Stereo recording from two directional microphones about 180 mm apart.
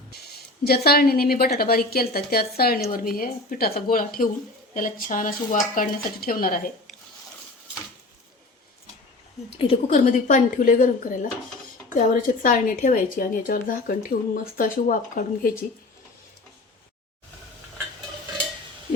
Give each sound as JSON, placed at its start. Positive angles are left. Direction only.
{"t": 0.6, "sound": "a woman's voice", "side_deg": 60}
{"t": 9.6, "sound": "a woman's voice", "side_deg": 35}